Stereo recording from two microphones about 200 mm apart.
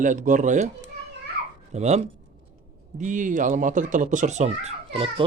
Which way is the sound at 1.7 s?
35° right (ahead or behind).